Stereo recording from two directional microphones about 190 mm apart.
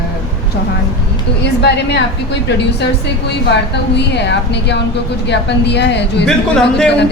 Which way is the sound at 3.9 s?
65° left (ahead or behind).